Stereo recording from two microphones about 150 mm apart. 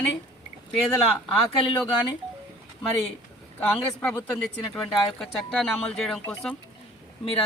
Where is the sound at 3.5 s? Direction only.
10° left (ahead or behind).